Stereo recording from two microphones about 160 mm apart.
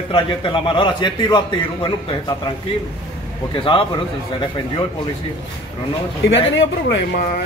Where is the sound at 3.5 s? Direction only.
35° left (ahead or behind).